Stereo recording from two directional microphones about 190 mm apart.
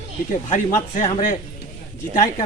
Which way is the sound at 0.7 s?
40° left (ahead or behind).